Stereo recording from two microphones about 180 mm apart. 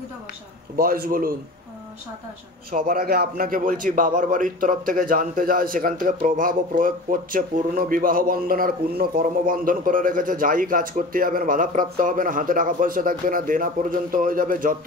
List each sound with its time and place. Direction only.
0.7 s a man's voice: 55° right (ahead or behind)
2.7 s a man's voice: 55° right (ahead or behind)